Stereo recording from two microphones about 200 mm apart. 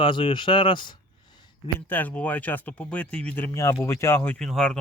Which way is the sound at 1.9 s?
10° left (ahead or behind).